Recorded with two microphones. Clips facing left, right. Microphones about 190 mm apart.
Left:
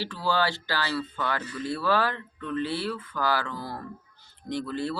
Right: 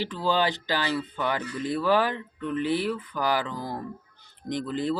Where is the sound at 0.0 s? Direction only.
20° right (ahead or behind).